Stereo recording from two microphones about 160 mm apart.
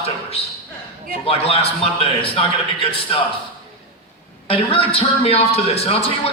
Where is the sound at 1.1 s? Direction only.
35° left (ahead or behind).